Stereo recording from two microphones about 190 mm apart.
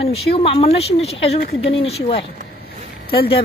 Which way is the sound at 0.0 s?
30° left (ahead or behind).